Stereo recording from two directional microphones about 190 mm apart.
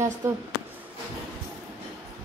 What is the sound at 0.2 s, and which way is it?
Speech, 15° right (ahead or behind).